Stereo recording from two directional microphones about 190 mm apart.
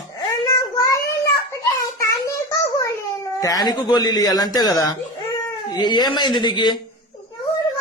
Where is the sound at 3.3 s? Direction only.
20° left (ahead or behind).